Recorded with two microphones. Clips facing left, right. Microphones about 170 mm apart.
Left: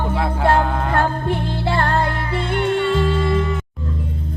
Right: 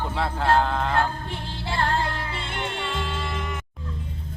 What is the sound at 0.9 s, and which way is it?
Music, 60° left (ahead or behind).